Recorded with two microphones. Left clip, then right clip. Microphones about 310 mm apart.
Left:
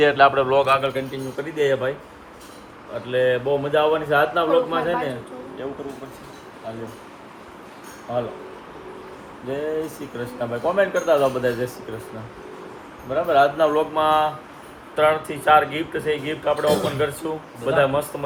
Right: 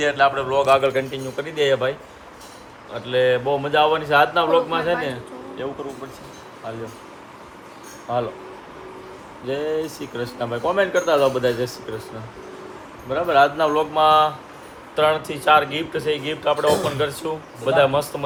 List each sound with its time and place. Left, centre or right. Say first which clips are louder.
0.0 s speech: left 3 dB; centre
0.8 s speech: right 4 dB; right
1.4 s speech: right 2 dB; centre
2.9 s speech: right 2 dB; centre
8.1 s speech: right 2 dB; centre
9.5 s speech: right 2 dB; centre
13.1 s speech: right 1 dB; centre